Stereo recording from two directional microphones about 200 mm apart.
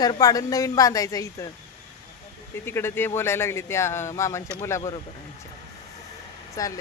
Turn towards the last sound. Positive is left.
turn(degrees=15)  # may be behind; listen again after turning